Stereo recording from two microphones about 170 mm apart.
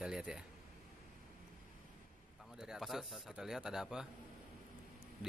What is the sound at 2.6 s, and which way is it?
Speech, centre (ahead or behind).